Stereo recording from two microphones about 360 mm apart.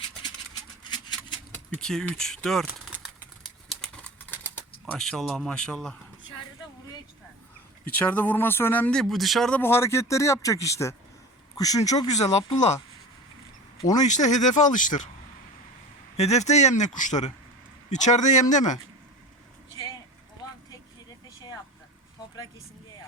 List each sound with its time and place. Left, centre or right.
0.9 s a sound: centre
1.8 s speech: centre
3.7 s bird: centre
7.9 s speech: centre
13.8 s speech: centre
16.1 s speech: centre
19.7 s a sound: centre
21.2 s vehicle: centre